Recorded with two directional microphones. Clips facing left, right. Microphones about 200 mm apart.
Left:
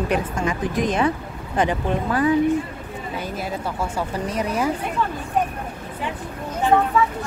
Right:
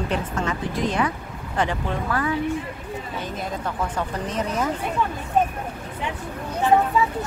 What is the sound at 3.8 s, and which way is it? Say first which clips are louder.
Speech: left 1 dB; 10° left (ahead or behind).